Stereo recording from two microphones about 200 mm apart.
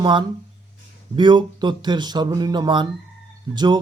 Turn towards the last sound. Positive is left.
turn(degrees=-20)  # may be behind; listen again after turning